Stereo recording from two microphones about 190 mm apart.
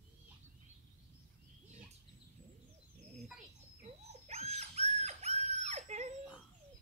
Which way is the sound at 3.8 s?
35° right (ahead or behind).